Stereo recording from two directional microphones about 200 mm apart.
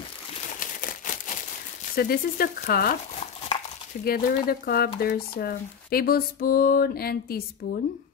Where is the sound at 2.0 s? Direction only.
50° left (ahead or behind).